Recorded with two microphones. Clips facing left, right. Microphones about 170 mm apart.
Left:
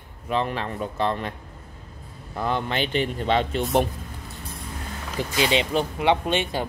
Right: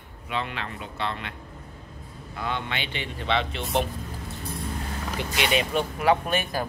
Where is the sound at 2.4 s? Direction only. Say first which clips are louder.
Left 6 dB; 40° left (ahead or behind).